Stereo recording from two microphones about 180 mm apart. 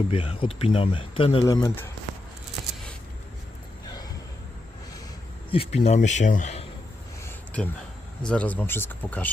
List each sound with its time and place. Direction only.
0.1 s speech: 30° left (ahead or behind)
1.6 s speech: 10° left (ahead or behind)
5.5 s speech: 35° left (ahead or behind)
7.3 s a sound: 10° left (ahead or behind)
8.2 s speech: 5° left (ahead or behind)